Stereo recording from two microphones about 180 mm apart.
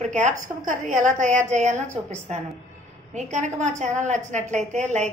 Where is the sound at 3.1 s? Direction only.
40° right (ahead or behind).